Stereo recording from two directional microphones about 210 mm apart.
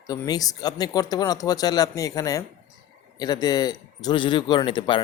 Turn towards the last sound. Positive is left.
turn(degrees=20)  # may be behind; listen again after turning